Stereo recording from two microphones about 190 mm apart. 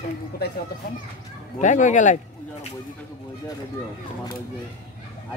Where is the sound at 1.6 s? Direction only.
40° left (ahead or behind).